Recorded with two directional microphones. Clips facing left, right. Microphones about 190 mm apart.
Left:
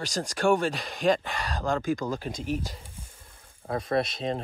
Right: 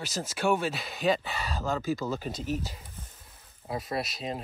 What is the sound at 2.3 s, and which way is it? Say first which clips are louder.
Speech: left 2 dB; 10° left (ahead or behind).